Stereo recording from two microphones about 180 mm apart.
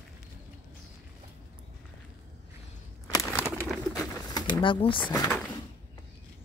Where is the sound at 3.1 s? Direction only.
15° left (ahead or behind).